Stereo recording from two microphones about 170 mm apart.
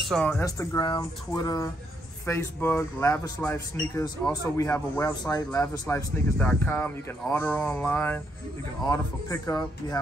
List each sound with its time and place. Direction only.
0.0 s speech: 5° left (ahead or behind)
0.4 s speech: 20° left (ahead or behind)
8.8 s speech: 20° left (ahead or behind)